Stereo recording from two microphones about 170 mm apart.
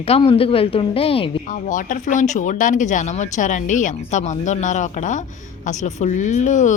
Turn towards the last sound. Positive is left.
turn(degrees=45)  # may be behind; listen again after turning